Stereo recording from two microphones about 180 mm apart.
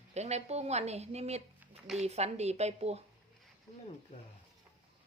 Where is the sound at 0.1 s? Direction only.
40° right (ahead or behind).